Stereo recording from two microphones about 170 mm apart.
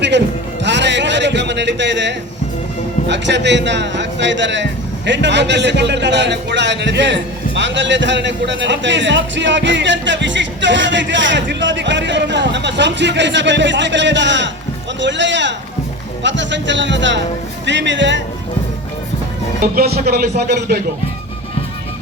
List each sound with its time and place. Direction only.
0.6 s music: 90° right
3.1 s a man's voice: 90° right
19.7 s speech: 65° right (ahead or behind)